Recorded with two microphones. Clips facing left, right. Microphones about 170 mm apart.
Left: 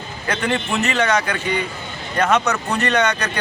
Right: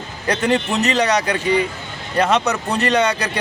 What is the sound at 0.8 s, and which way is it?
Speech, 35° right (ahead or behind).